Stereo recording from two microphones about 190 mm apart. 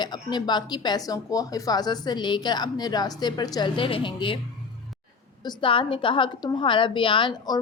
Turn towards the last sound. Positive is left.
turn(degrees=20)  # may be behind; listen again after turning